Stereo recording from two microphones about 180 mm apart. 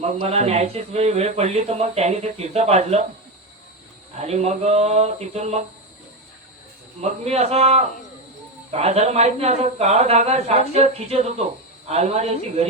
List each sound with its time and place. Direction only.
0.0 s speech: 35° right (ahead or behind)
4.2 s speech: 35° right (ahead or behind)
7.0 s speech: 35° right (ahead or behind)